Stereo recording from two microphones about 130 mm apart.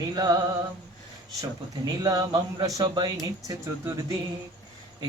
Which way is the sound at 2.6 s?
30° right (ahead or behind).